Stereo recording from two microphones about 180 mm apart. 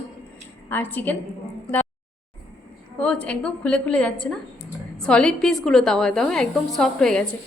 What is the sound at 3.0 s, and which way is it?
A woman's voice, 5° left (ahead or behind).